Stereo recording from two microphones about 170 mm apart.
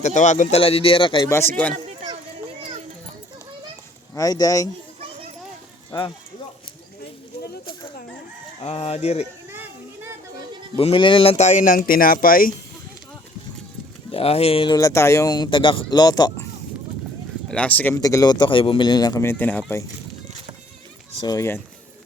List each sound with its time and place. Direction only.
0.0 s speech: 45° left (ahead or behind); by 1.3 s 30° left (ahead or behind)
1.5 s speech: 5° left (ahead or behind)
4.1 s speech: 20° left (ahead or behind)
8.6 s speech: 35° left (ahead or behind)
9.5 s children playing: 15° right (ahead or behind)
10.8 s speech: 30° left (ahead or behind); by 12.5 s 55° left (ahead or behind)
14.1 s speech: 35° left (ahead or behind)
17.5 s speech: 10° left (ahead or behind)
17.9 s speech: 20° left (ahead or behind)
21.2 s speech: 20° left (ahead or behind)